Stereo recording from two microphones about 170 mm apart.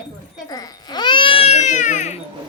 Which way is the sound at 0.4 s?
20° left (ahead or behind).